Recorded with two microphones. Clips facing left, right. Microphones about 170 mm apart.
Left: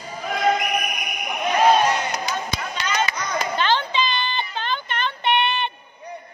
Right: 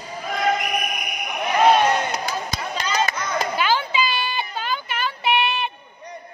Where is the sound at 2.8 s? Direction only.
35° right (ahead or behind).